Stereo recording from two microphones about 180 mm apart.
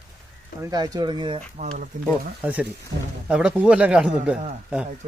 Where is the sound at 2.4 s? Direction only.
10° right (ahead or behind).